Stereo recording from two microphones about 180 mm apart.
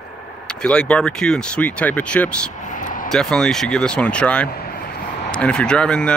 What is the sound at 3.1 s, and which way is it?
Speech, 5° left (ahead or behind).